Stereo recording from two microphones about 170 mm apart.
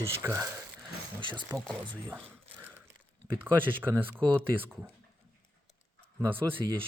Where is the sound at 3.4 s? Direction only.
10° right (ahead or behind).